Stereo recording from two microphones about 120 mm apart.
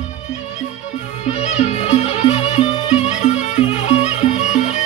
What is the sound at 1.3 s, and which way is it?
Music, 70° left (ahead or behind).